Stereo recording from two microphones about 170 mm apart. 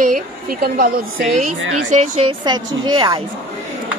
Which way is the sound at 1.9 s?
45° right (ahead or behind).